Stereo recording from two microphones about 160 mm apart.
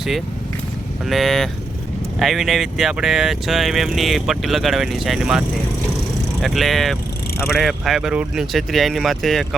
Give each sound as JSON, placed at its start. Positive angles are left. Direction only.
{"t": 1.0, "sound": "speech", "side_deg": 0}